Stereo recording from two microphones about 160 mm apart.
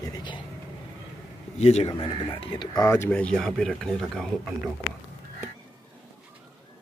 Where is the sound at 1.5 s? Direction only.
40° left (ahead or behind).